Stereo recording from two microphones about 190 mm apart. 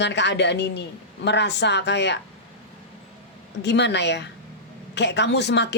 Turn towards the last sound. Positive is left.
turn(degrees=65)  # may be behind; listen again after turning